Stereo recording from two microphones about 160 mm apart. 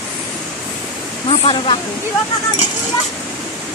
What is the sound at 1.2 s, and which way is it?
Speech, 35° left (ahead or behind).